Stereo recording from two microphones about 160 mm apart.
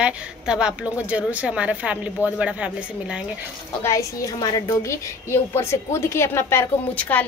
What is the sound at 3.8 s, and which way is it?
A woman's voice, 20° left (ahead or behind).